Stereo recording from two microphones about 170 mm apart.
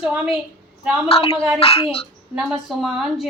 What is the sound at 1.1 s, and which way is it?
Speech, 35° left (ahead or behind).